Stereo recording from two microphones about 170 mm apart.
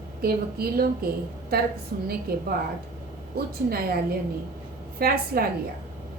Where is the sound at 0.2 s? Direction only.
65° right (ahead or behind).